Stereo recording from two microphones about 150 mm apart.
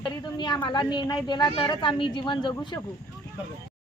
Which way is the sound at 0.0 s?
30° left (ahead or behind).